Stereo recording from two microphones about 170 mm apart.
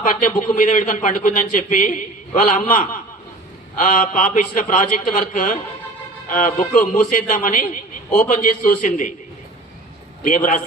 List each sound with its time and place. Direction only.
0.0 s a man's voice: 50° left (ahead or behind)
10.2 s a man's voice: 50° left (ahead or behind)